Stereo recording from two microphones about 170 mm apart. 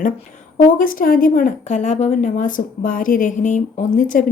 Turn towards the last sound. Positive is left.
turn(degrees=55)  # may be behind; listen again after turning